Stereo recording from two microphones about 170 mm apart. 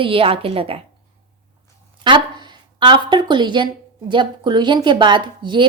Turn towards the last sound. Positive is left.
turn(degrees=-30)  # may be behind; listen again after turning